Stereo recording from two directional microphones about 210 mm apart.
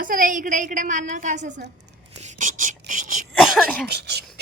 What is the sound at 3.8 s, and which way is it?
Speech, 50° right (ahead or behind).